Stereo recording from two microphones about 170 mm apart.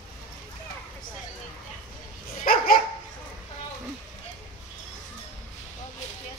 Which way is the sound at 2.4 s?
55° left (ahead or behind).